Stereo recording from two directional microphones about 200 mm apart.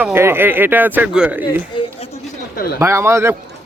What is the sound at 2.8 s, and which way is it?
Speech, 15° right (ahead or behind).